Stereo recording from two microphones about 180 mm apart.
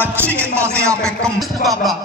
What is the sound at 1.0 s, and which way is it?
Music, 5° left (ahead or behind).